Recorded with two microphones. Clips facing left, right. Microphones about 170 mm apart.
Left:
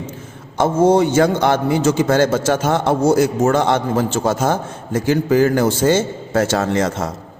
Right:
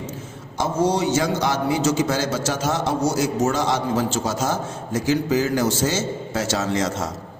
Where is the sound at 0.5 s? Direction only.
55° left (ahead or behind).